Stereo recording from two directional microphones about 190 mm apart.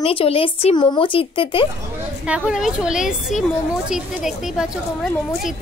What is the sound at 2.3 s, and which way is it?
Speech, 5° right (ahead or behind).